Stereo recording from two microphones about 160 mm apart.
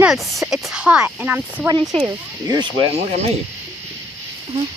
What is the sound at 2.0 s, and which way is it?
Speech, 25° right (ahead or behind).